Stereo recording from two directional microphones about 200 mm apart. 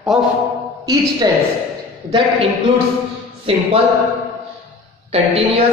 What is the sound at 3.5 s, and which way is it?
Speech, 25° right (ahead or behind).